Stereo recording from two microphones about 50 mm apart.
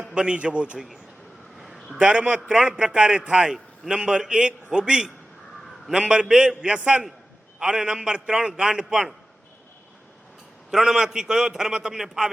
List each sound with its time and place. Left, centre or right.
0.0 s a man's voice: centre
1.5 s a sound: centre
2.0 s a man's voice: centre
10.7 s a man's voice: centre